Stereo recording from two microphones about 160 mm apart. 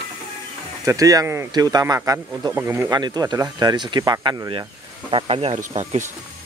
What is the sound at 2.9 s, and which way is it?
Speech, 25° right (ahead or behind).